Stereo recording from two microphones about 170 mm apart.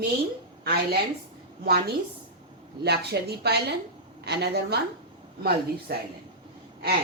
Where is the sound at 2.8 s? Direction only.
75° right (ahead or behind).